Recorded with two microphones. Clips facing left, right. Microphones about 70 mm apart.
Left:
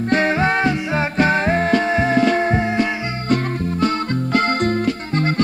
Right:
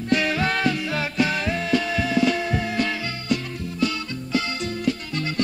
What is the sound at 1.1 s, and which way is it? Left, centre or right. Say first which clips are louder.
Music: left 8 dB; left.